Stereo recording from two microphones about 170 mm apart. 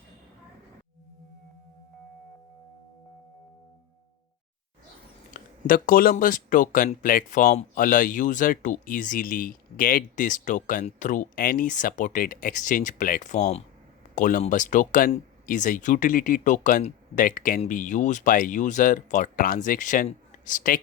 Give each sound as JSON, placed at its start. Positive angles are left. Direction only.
{"t": 5.3, "sound": "speech", "side_deg": 55}